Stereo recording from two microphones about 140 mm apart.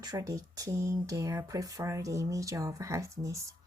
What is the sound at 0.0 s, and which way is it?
Speech, 25° right (ahead or behind).